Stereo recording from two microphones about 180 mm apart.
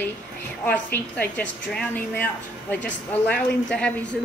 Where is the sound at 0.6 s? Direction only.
10° left (ahead or behind).